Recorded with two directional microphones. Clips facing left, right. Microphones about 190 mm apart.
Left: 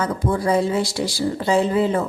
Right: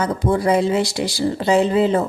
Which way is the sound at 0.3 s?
20° right (ahead or behind).